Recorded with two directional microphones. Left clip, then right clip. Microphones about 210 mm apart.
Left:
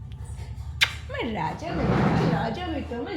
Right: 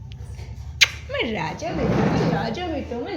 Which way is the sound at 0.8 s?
20° left (ahead or behind).